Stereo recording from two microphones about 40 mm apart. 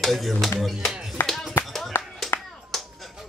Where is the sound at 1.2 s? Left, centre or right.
Left.